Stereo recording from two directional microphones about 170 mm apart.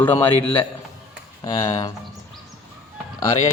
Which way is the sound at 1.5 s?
20° left (ahead or behind).